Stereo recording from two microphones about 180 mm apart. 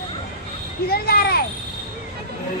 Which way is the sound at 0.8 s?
60° left (ahead or behind).